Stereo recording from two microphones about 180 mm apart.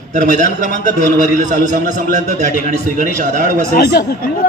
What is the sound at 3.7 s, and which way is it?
Speech, 60° left (ahead or behind).